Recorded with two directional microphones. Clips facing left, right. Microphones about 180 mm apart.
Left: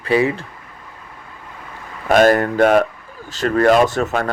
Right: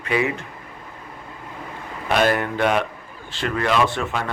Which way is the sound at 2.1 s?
45° left (ahead or behind).